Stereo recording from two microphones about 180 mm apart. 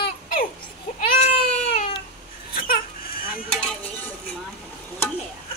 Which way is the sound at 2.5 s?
55° left (ahead or behind).